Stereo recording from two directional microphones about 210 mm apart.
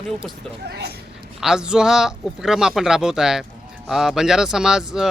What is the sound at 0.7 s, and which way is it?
Speech, 50° right (ahead or behind).